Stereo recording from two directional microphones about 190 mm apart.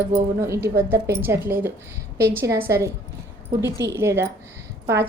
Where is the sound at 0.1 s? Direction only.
15° right (ahead or behind).